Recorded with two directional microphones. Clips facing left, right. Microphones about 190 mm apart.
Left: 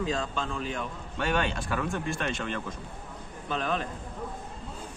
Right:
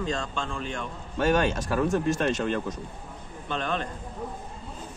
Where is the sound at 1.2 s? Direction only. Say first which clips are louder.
Right 5 dB; 40° right (ahead or behind).